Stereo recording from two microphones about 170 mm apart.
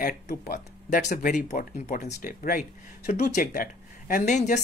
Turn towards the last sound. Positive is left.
turn(degrees=45)  # may be behind; listen again after turning